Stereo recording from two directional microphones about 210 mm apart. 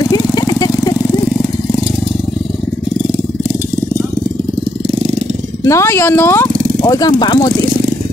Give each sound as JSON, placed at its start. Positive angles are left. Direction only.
{"t": 0.0, "sound": "vehicle", "side_deg": 20}
{"t": 5.7, "sound": "speech", "side_deg": 15}